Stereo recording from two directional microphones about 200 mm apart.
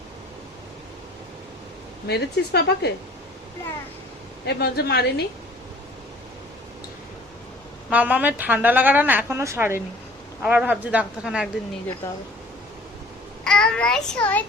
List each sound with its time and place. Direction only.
2.0 s speech: 55° left (ahead or behind)
4.4 s a woman's voice: 55° left (ahead or behind)
7.9 s a woman's voice: 10° right (ahead or behind)
13.4 s speech: 5° left (ahead or behind)